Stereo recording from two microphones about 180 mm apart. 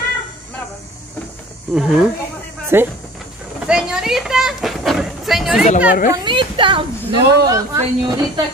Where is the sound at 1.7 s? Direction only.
Centre (ahead or behind).